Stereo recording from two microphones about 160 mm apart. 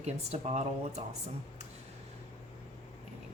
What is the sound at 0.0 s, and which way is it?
A woman's voice, 40° right (ahead or behind).